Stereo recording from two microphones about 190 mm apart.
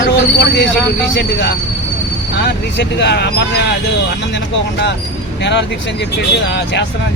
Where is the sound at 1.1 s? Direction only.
60° left (ahead or behind).